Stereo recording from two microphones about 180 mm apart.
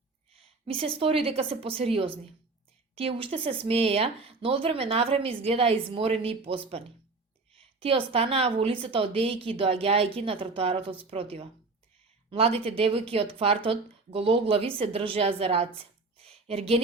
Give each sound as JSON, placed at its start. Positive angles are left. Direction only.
{"t": 0.6, "sound": "speech", "side_deg": -30}